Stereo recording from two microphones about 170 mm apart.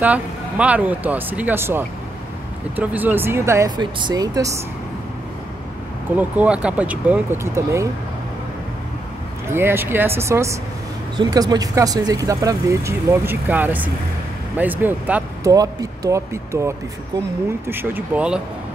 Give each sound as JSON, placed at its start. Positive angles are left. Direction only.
{"t": 0.0, "sound": "speech", "side_deg": -10}
{"t": 6.1, "sound": "speech", "side_deg": -10}
{"t": 9.5, "sound": "speech", "side_deg": -15}
{"t": 15.4, "sound": "speech", "side_deg": -20}